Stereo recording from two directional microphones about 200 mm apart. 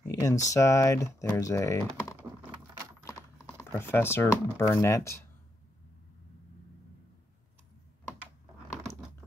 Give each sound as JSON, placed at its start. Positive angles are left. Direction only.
{"t": 0.1, "sound": "speech", "side_deg": 15}
{"t": 3.5, "sound": "speech", "side_deg": 10}